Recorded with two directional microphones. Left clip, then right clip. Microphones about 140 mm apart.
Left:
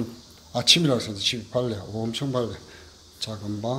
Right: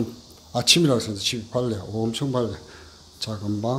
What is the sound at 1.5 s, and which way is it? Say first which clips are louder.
Speech: right 1 dB; 25° right (ahead or behind).